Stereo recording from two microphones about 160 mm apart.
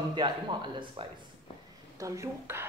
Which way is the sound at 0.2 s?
25° right (ahead or behind).